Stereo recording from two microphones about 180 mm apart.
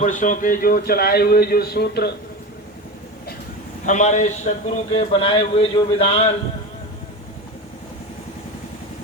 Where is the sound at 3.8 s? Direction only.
40° left (ahead or behind).